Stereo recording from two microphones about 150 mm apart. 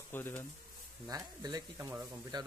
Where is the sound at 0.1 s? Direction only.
15° left (ahead or behind).